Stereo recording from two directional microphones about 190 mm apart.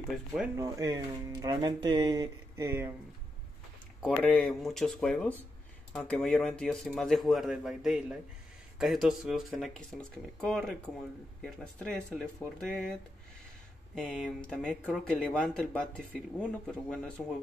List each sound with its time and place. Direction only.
0.6 s speech: 15° right (ahead or behind)
4.2 s speech: 5° left (ahead or behind)
13.9 s speech: centre (ahead or behind)